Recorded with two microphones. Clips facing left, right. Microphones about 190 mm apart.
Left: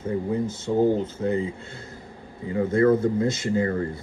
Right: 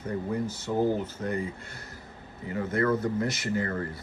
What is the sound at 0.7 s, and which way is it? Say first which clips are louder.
Speech: left 5 dB; 50° left (ahead or behind).